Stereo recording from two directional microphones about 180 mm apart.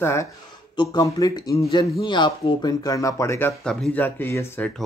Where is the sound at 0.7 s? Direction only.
25° left (ahead or behind).